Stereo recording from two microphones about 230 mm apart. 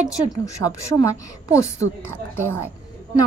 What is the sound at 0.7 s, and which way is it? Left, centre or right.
A woman's voice, centre.